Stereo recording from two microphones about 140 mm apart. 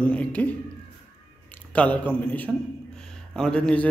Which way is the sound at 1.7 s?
10° left (ahead or behind).